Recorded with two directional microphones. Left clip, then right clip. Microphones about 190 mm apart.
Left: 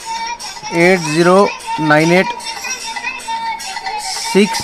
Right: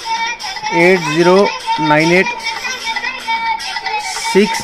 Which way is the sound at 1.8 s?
40° left (ahead or behind).